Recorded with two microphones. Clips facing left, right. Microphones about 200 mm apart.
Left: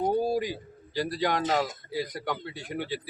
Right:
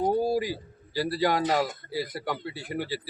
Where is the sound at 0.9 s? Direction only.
5° right (ahead or behind).